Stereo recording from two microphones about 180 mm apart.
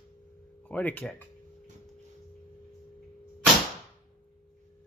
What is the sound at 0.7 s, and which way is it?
Speech, 10° left (ahead or behind).